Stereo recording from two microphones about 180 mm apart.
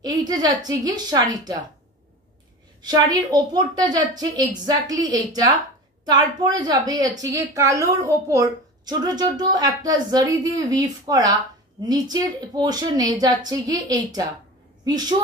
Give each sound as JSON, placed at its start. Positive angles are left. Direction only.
{"t": 0.0, "sound": "a woman's voice", "side_deg": -20}
{"t": 2.8, "sound": "a woman's voice", "side_deg": -25}